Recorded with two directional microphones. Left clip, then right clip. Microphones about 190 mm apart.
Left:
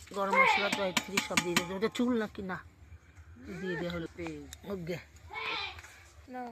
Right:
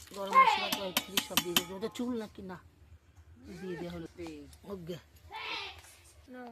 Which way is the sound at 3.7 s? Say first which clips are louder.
Left 5 dB; 15° left (ahead or behind).